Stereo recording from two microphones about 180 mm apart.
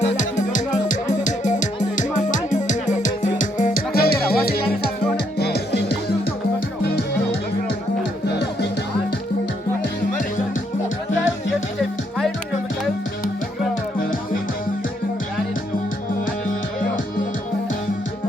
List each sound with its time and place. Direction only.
0.0 s music: 45° left (ahead or behind); by 6.1 s 65° left (ahead or behind)
8.3 s music: 70° left (ahead or behind)
11.8 s music: centre (ahead or behind)
14.0 s music: 50° left (ahead or behind)